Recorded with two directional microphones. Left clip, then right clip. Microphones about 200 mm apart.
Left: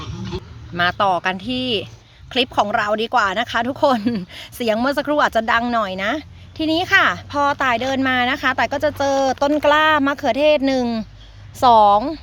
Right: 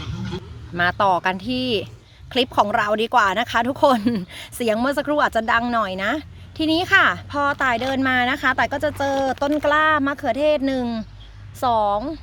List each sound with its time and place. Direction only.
0.8 s speech: 5° left (ahead or behind); by 12.2 s 25° left (ahead or behind)